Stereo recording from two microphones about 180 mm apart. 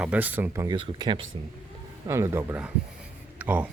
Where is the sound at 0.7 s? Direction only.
25° right (ahead or behind).